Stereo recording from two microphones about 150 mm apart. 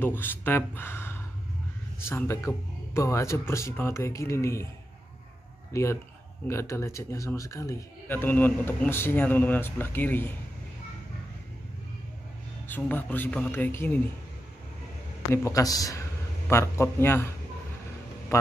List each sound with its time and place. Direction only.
0.0 s a man's voice: 15° left (ahead or behind)
5.7 s a man's voice: 20° left (ahead or behind)
12.6 s a man's voice: 10° left (ahead or behind)
15.3 s speech: 20° left (ahead or behind)
18.3 s speech: 20° left (ahead or behind)